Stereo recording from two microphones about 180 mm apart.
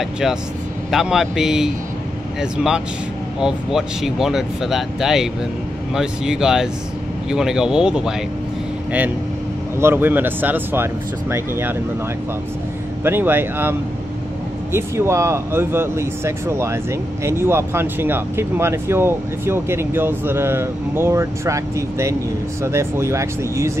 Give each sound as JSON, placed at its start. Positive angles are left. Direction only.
{"t": 0.9, "sound": "speech", "side_deg": 0}
{"t": 9.8, "sound": "speech", "side_deg": -10}
{"t": 13.0, "sound": "speech", "side_deg": -10}